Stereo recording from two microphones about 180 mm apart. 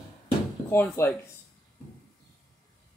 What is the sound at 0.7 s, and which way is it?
Speech, 15° left (ahead or behind).